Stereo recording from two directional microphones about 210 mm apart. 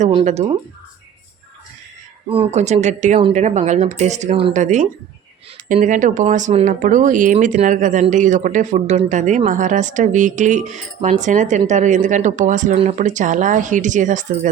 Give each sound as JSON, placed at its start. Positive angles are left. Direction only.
{"t": 0.0, "sound": "speech", "side_deg": -30}
{"t": 2.3, "sound": "speech", "side_deg": -30}